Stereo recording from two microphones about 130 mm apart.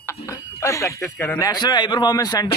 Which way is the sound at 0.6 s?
25° left (ahead or behind).